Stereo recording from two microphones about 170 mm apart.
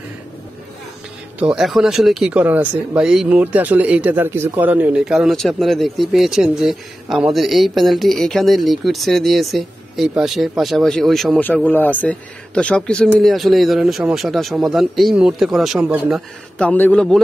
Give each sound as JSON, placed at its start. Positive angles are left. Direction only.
{"t": 1.4, "sound": "speech", "side_deg": 0}
{"t": 16.5, "sound": "a man's voice", "side_deg": 10}